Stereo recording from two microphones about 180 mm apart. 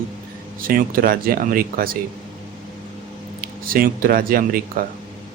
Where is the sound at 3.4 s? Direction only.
55° right (ahead or behind).